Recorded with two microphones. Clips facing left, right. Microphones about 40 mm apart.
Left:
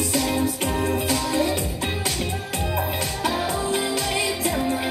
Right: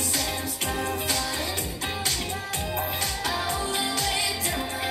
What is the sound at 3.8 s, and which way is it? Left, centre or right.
Music, left.